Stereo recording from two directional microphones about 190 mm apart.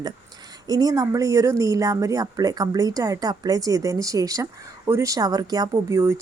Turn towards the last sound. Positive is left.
turn(degrees=-15)  # may be behind; listen again after turning